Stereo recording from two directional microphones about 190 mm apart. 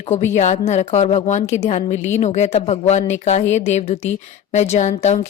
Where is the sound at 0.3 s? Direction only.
35° left (ahead or behind).